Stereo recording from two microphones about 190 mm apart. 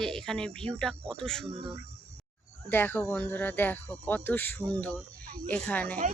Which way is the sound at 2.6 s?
10° left (ahead or behind).